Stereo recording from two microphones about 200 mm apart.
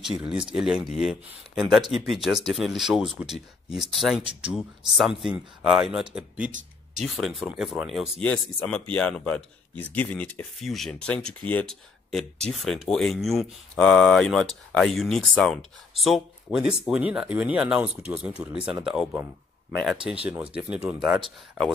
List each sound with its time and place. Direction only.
0.2 s speech: 5° right (ahead or behind)
4.2 s speech: 25° right (ahead or behind)
4.5 s speech: centre (ahead or behind)